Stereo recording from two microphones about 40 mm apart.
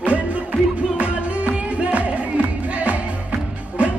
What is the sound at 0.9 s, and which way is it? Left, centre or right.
Music, right.